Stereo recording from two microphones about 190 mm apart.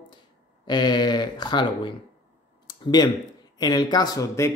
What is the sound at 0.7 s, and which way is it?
Speech, 20° left (ahead or behind).